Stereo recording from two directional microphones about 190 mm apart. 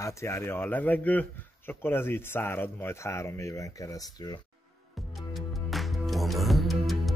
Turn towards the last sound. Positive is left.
turn(degrees=0)  # may be behind; listen again after turning